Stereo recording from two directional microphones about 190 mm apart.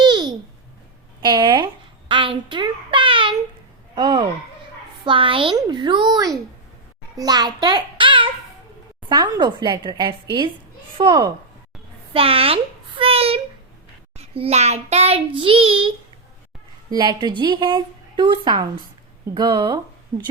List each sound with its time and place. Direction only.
0.0 s a sound: 20° right (ahead or behind)
3.9 s a woman's voice: 25° right (ahead or behind)
14.2 s child singing: 30° right (ahead or behind)
17.0 s a woman's voice: 25° right (ahead or behind)